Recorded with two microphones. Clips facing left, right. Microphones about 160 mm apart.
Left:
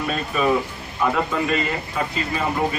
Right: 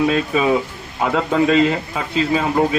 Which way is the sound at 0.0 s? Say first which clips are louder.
Right 5 dB; 90° right.